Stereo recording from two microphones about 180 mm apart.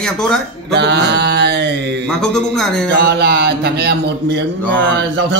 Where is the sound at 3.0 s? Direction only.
70° right (ahead or behind).